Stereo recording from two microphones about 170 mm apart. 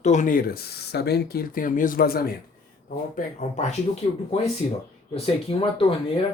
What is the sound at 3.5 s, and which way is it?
Speech, 40° left (ahead or behind).